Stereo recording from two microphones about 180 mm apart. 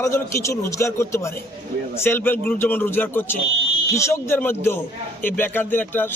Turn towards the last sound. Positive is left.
turn(degrees=10)  # may be behind; listen again after turning